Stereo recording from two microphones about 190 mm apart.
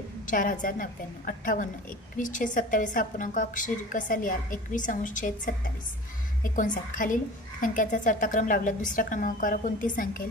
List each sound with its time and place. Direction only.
0.3 s a woman's voice: 45° left (ahead or behind)